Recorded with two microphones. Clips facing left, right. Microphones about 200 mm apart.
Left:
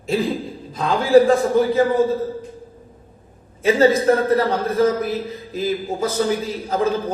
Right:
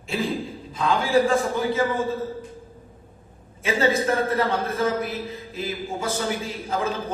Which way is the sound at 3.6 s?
40° left (ahead or behind).